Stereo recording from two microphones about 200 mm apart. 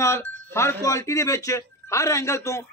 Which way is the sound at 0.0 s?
15° left (ahead or behind).